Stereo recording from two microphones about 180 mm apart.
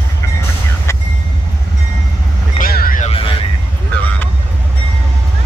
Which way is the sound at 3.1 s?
30° left (ahead or behind).